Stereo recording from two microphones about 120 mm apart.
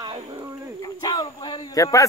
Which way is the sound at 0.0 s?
35° right (ahead or behind).